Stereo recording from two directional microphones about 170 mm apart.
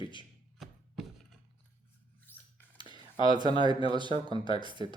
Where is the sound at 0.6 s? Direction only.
Centre (ahead or behind).